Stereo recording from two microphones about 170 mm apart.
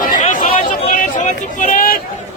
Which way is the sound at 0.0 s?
50° left (ahead or behind).